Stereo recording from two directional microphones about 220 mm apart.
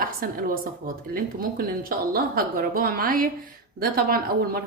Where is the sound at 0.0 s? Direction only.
40° right (ahead or behind).